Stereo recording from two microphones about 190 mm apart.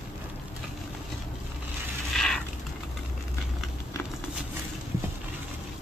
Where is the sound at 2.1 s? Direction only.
Centre (ahead or behind).